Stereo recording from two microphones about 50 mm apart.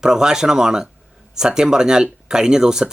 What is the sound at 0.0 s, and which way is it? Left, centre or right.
Speech, centre.